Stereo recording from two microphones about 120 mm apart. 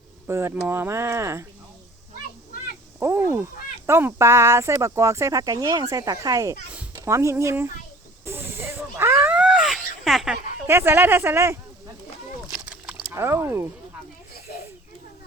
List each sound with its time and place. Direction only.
0.3 s speech: 20° right (ahead or behind)
3.0 s speech: 20° right (ahead or behind)
8.2 s a sound: 20° right (ahead or behind); by 10.3 s centre (ahead or behind)
10.7 s speech: 20° right (ahead or behind)
12.5 s a sound: 5° right (ahead or behind)
13.1 s speech: 20° right (ahead or behind)